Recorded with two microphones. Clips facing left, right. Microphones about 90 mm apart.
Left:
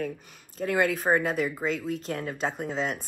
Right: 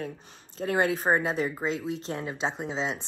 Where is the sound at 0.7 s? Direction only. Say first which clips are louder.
Even; 35° right (ahead or behind).